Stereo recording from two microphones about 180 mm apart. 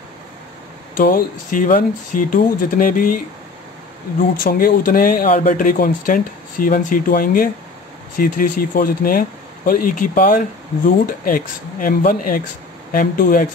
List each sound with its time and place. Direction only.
0.9 s speech: 50° left (ahead or behind)
4.4 s speech: 55° left (ahead or behind)